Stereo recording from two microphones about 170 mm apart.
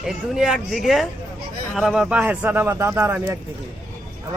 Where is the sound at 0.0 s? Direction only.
5° right (ahead or behind).